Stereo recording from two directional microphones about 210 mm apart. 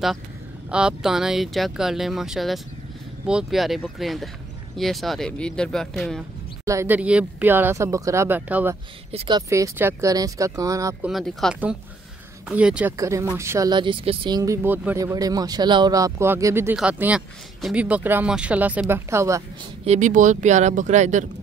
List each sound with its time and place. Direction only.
0.7 s speech: 5° right (ahead or behind)
6.6 s speech: 15° right (ahead or behind)
9.1 s speech: 25° right (ahead or behind)
9.5 s speech: 10° right (ahead or behind)
11.1 s speech: centre (ahead or behind)
19.8 s speech: 35° right (ahead or behind)